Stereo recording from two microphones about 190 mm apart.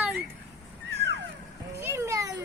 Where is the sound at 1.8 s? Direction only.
15° right (ahead or behind).